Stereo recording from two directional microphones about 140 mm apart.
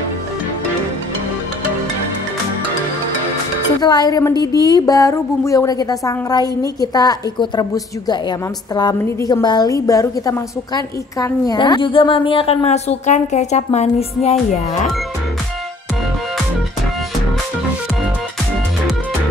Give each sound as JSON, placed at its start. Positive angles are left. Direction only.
{"t": 3.8, "sound": "speech", "side_deg": 30}